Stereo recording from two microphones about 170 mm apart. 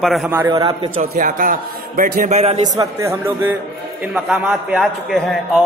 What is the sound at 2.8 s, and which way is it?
Speech, 15° right (ahead or behind).